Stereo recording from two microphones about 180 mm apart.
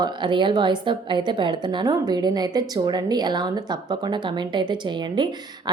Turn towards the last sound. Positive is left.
turn(degrees=-25)  # may be behind; listen again after turning